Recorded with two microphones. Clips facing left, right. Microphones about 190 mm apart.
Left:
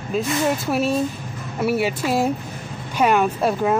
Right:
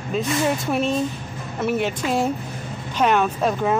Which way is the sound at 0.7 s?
10° left (ahead or behind).